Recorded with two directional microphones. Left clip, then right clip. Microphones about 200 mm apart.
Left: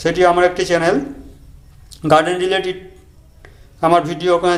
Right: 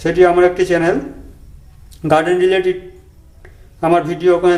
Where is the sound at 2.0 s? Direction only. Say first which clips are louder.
Right 1 dB; 5° right (ahead or behind).